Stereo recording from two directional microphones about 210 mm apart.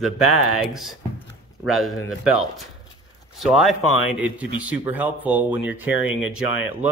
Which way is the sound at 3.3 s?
Centre (ahead or behind).